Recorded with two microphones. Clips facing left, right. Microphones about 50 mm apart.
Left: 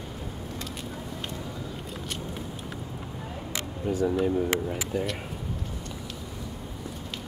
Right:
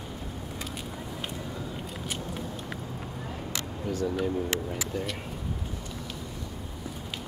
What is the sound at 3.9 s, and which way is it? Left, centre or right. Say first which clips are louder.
Speech: left 4 dB; centre.